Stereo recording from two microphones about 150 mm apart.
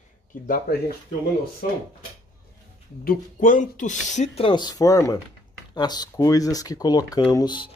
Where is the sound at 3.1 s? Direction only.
60° left (ahead or behind).